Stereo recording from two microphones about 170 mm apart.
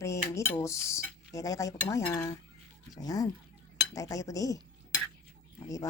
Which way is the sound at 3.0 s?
20° left (ahead or behind).